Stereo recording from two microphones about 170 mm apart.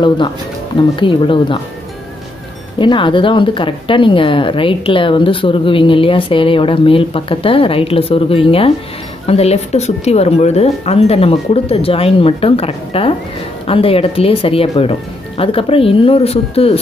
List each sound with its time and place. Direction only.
0.7 s speech: 30° left (ahead or behind)
2.8 s speech: 30° left (ahead or behind)